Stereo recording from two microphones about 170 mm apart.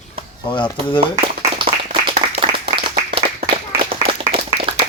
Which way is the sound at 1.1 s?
30° right (ahead or behind).